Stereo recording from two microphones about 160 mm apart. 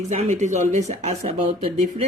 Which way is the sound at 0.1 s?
45° right (ahead or behind).